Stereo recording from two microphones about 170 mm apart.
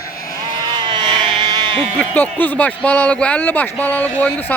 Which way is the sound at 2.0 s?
10° left (ahead or behind).